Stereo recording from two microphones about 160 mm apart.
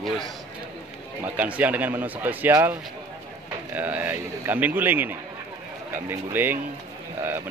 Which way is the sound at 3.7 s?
10° right (ahead or behind).